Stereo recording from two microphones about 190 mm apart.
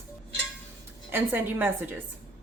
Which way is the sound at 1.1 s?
10° right (ahead or behind).